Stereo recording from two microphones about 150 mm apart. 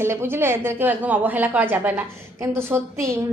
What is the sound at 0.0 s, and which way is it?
A woman's voice, 15° right (ahead or behind).